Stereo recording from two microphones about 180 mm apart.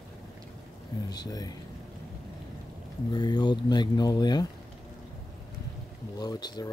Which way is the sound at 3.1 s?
25° left (ahead or behind).